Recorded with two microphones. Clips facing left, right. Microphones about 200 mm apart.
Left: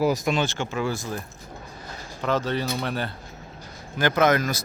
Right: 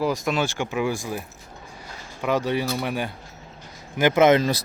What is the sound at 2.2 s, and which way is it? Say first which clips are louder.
Speech: right 2 dB; 15° right (ahead or behind).